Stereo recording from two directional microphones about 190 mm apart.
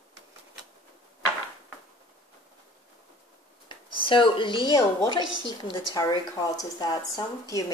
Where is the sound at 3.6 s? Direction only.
25° left (ahead or behind).